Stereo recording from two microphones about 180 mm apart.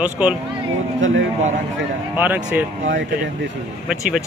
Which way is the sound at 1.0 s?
90° right.